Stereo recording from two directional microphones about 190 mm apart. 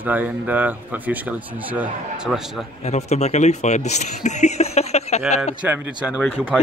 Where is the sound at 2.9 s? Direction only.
35° left (ahead or behind).